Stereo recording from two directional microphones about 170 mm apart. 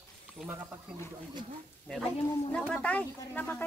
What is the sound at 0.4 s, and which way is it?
Speech, 5° right (ahead or behind).